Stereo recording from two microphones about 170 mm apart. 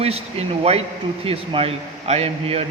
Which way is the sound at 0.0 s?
35° right (ahead or behind).